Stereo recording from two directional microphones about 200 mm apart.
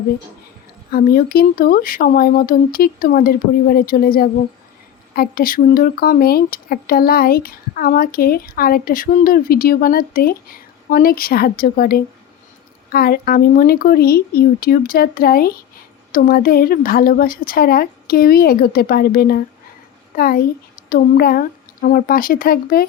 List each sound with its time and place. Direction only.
0.9 s speech: 50° left (ahead or behind)